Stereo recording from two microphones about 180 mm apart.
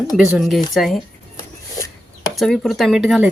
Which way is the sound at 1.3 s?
15° left (ahead or behind).